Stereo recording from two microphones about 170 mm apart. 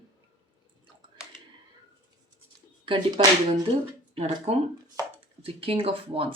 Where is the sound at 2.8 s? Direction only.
30° right (ahead or behind).